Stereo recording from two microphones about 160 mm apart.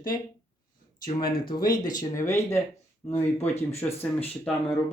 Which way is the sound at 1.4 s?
25° left (ahead or behind).